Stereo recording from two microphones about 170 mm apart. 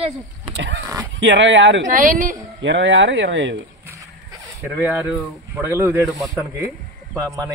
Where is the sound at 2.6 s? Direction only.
90° right.